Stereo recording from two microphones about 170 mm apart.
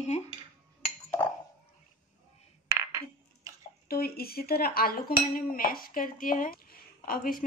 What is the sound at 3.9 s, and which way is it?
A woman's voice, 65° left (ahead or behind).